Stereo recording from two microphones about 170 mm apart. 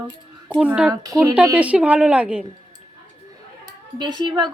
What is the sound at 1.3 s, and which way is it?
Speech, 10° right (ahead or behind).